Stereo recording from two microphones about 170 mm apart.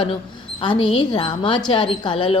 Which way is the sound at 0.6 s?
30° left (ahead or behind).